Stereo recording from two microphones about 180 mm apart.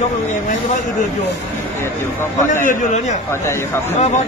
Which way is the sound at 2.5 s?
45° left (ahead or behind).